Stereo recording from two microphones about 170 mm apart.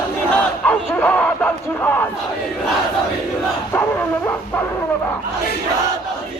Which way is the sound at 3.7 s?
10° left (ahead or behind).